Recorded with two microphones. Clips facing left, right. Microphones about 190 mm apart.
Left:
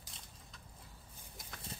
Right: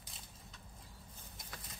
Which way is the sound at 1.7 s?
30° left (ahead or behind).